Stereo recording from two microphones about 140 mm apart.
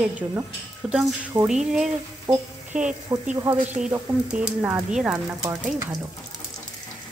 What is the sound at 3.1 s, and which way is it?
Speech, 25° right (ahead or behind).